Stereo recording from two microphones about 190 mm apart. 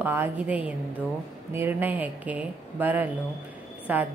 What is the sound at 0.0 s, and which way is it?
Speech, 10° right (ahead or behind).